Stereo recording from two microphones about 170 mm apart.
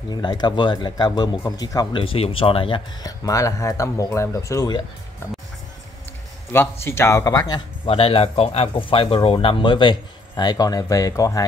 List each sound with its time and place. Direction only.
0.1 s speech: 25° left (ahead or behind)
6.5 s speech: 15° left (ahead or behind)